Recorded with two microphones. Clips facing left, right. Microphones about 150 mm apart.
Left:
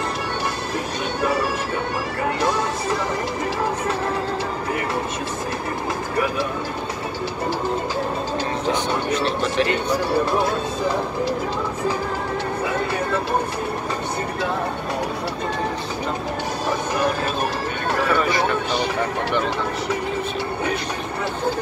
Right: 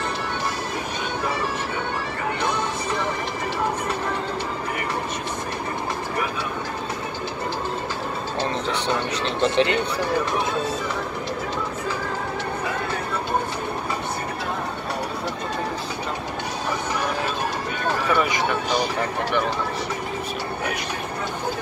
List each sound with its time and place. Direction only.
9.4 s speech: 25° right (ahead or behind)